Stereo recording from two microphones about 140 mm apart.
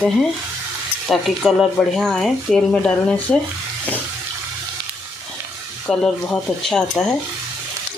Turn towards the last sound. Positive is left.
turn(degrees=5)  # may be behind; listen again after turning